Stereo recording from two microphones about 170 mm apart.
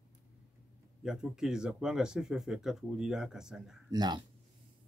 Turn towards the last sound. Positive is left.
turn(degrees=-25)  # may be behind; listen again after turning